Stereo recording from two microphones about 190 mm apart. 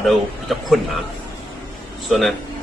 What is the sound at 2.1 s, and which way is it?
Speech, centre (ahead or behind).